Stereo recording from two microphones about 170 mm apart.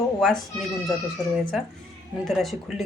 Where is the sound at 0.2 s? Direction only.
Centre (ahead or behind).